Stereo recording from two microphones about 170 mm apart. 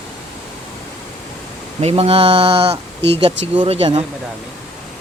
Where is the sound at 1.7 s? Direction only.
35° right (ahead or behind).